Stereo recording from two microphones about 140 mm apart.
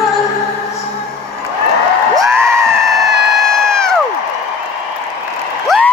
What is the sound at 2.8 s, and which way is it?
Crowd, centre (ahead or behind).